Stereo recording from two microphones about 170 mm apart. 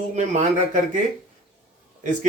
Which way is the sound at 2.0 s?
50° right (ahead or behind).